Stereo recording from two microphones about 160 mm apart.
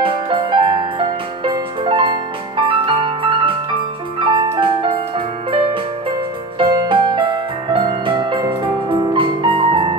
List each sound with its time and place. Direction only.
0.0 s music: 30° right (ahead or behind)